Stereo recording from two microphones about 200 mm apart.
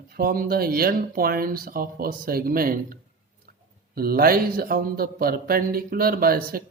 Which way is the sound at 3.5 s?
45° right (ahead or behind).